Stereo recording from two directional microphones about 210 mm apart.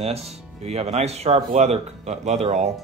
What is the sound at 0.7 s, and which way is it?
Speech, 30° right (ahead or behind).